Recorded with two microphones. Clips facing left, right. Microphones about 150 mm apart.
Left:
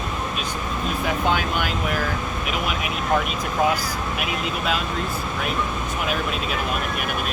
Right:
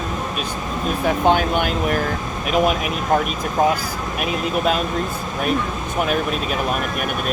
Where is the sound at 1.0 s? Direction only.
45° right (ahead or behind).